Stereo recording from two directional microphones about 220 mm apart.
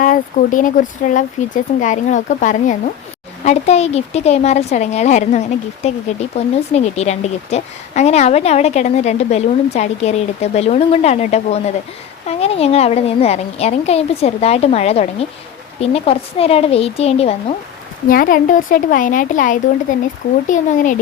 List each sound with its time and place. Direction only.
0.0 s a woman's voice: 35° left (ahead or behind)
18.1 s speech: 40° left (ahead or behind)